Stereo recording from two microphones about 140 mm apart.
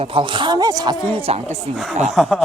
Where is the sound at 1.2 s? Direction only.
45° right (ahead or behind).